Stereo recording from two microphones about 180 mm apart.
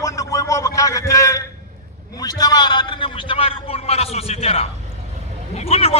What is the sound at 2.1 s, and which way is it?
A man's voice, 20° left (ahead or behind).